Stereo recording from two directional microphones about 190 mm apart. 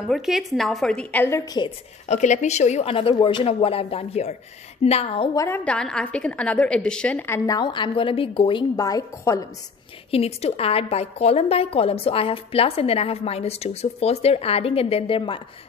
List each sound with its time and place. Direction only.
0.1 s a woman's voice: centre (ahead or behind); by 1.7 s 20° left (ahead or behind)
2.0 s a woman's voice: 40° left (ahead or behind)
5.3 s a woman's voice: 15° left (ahead or behind)
10.1 s a woman's voice: 30° left (ahead or behind)